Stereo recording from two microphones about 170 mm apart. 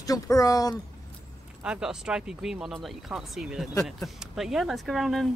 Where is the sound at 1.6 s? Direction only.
5° right (ahead or behind).